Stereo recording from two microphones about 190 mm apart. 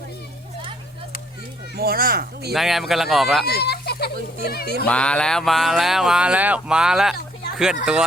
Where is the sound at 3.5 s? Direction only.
55° left (ahead or behind).